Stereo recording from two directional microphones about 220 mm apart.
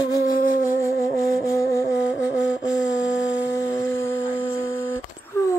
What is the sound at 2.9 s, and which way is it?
Shofar, 55° left (ahead or behind).